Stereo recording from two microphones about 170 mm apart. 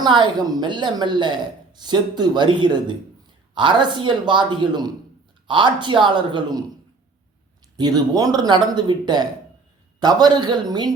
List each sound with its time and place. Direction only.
0.0 s a woman's voice: 25° right (ahead or behind)
7.8 s a woman's voice: 25° right (ahead or behind)